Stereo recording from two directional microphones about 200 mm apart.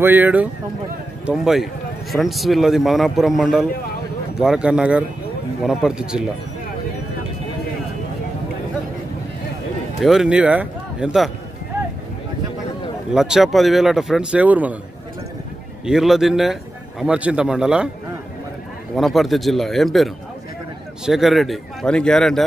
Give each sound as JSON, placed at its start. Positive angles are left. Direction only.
{"t": 0.0, "sound": "speech", "side_deg": -10}
{"t": 9.9, "sound": "speech", "side_deg": 0}
{"t": 13.1, "sound": "speech", "side_deg": 0}
{"t": 15.8, "sound": "speech", "side_deg": 0}
{"t": 18.9, "sound": "speech", "side_deg": 0}